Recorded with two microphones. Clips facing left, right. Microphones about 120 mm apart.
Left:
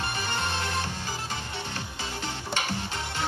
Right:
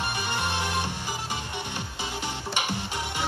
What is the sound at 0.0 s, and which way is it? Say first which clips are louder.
Music: right 1 dB; 15° right (ahead or behind).